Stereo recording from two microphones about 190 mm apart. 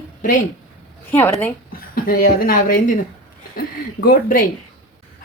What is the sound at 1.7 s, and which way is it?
Speech, 50° left (ahead or behind).